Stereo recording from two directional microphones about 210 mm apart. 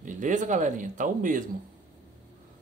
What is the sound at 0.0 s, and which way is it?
Speech, 35° right (ahead or behind).